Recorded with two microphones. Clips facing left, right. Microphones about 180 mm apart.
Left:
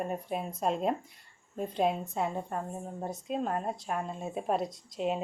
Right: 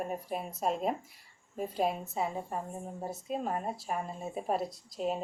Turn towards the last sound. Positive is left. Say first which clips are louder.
# left 2 dB
turn(degrees=0)  # may be behind; listen again after turning